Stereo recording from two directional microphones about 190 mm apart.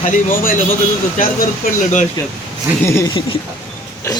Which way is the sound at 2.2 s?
20° left (ahead or behind).